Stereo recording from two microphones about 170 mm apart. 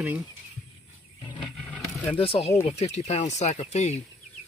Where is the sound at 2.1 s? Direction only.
35° left (ahead or behind).